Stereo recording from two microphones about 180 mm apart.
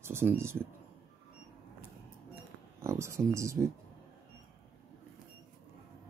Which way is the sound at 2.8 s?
15° right (ahead or behind).